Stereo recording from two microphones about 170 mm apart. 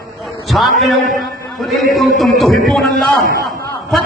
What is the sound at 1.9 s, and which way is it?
Speech, centre (ahead or behind).